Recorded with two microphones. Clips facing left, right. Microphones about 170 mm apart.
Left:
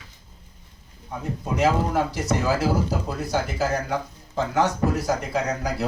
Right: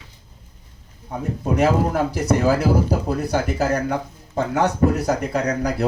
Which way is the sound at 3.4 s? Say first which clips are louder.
Right 4 dB; 60° right (ahead or behind).